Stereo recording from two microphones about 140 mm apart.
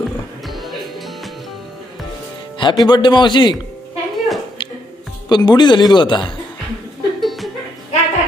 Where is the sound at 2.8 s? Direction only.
35° left (ahead or behind).